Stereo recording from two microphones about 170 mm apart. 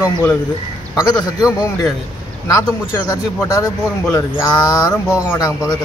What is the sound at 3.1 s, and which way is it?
Speech, 20° left (ahead or behind).